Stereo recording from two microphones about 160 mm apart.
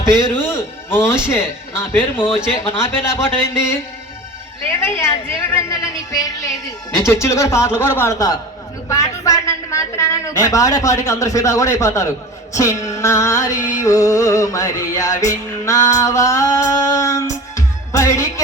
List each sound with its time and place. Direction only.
0.0 s speech: 20° left (ahead or behind)
5.5 s music: 20° left (ahead or behind)
7.0 s speech: 15° left (ahead or behind)
8.9 s music: 20° left (ahead or behind)